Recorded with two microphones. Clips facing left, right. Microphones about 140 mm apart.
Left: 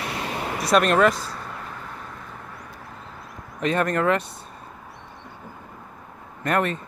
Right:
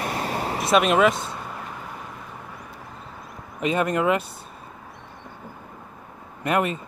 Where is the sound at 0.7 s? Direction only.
5° right (ahead or behind).